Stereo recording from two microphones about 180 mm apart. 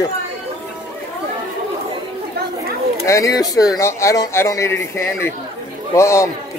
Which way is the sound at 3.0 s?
20° left (ahead or behind).